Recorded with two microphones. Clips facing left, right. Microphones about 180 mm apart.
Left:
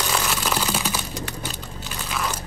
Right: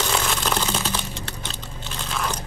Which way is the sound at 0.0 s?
5° left (ahead or behind).